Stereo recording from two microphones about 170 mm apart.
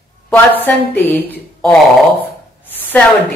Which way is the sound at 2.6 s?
10° left (ahead or behind).